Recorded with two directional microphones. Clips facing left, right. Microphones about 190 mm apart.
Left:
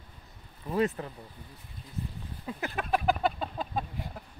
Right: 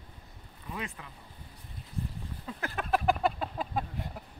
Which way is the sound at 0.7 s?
40° left (ahead or behind).